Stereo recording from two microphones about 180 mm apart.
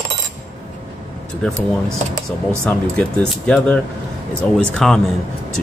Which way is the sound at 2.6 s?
5° left (ahead or behind).